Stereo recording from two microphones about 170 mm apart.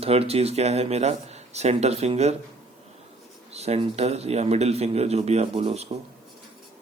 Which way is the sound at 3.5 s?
40° right (ahead or behind).